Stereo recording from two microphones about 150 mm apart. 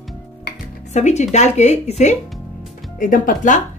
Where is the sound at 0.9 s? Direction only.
50° left (ahead or behind).